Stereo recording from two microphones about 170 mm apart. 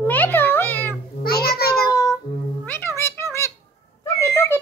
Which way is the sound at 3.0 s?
15° left (ahead or behind).